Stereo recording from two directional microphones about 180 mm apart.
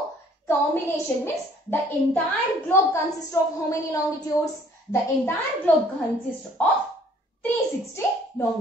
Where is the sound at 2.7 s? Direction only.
15° left (ahead or behind).